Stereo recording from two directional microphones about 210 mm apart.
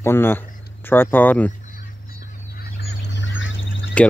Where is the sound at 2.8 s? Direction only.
55° left (ahead or behind).